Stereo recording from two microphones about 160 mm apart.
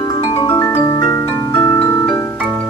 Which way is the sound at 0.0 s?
20° left (ahead or behind).